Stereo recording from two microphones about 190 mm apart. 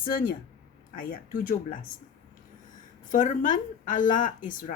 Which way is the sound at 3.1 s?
45° left (ahead or behind).